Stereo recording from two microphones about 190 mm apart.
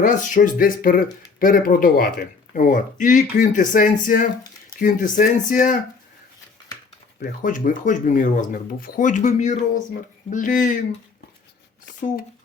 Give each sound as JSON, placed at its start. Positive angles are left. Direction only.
{"t": 0.0, "sound": "speech", "side_deg": 40}
{"t": 7.2, "sound": "speech", "side_deg": 45}